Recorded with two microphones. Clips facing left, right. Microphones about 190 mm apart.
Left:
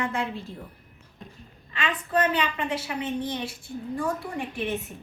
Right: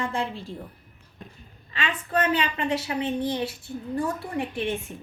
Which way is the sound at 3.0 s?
30° right (ahead or behind).